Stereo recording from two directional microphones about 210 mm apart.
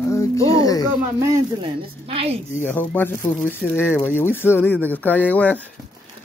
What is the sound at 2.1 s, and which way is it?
Speech, 30° right (ahead or behind).